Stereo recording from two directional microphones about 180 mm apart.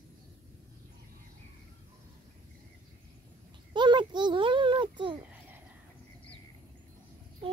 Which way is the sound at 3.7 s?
25° right (ahead or behind).